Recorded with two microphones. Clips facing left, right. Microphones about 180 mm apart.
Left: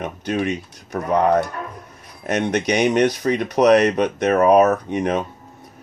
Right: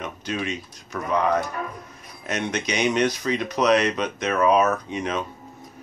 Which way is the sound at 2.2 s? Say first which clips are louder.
Left 7 dB; 50° left (ahead or behind).